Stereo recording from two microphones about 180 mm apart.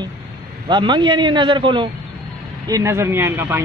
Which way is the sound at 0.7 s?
25° right (ahead or behind).